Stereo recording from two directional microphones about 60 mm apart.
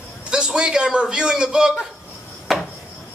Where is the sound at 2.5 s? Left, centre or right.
Centre.